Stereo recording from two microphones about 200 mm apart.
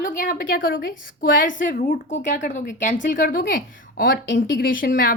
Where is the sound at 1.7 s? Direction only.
35° left (ahead or behind).